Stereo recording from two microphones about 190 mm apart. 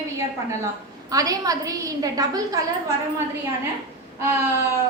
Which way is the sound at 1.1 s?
20° right (ahead or behind).